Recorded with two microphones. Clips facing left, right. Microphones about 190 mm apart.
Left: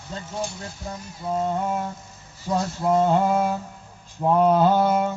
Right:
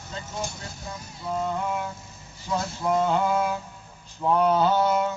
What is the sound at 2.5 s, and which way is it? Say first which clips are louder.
Mantra: left 4 dB; 40° left (ahead or behind).